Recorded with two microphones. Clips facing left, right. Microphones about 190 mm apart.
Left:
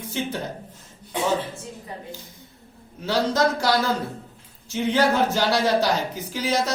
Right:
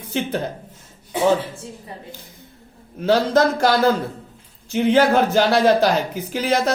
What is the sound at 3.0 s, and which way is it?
Speech, 55° right (ahead or behind).